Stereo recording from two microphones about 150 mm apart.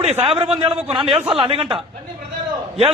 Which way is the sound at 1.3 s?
35° right (ahead or behind).